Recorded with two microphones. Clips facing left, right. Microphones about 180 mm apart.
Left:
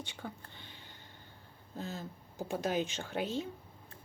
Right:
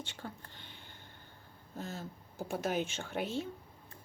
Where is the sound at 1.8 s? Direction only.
15° left (ahead or behind).